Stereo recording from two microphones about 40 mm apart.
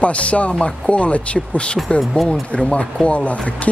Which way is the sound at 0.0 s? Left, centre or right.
Left.